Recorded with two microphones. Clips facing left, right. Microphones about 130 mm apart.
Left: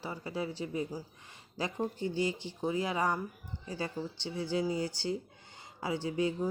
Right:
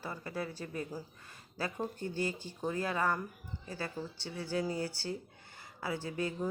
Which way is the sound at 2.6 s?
10° left (ahead or behind).